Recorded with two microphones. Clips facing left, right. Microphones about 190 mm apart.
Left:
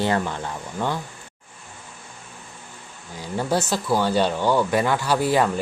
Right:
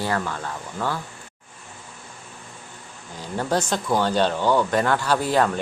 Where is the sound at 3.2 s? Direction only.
10° left (ahead or behind).